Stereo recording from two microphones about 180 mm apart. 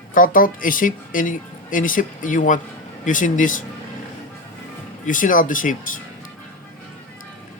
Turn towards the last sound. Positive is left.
turn(degrees=45)  # may be behind; listen again after turning